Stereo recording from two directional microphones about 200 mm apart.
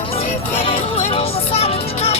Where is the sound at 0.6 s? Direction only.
30° left (ahead or behind).